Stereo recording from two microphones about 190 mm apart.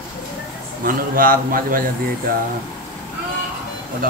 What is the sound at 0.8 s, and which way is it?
A man's voice, 50° right (ahead or behind).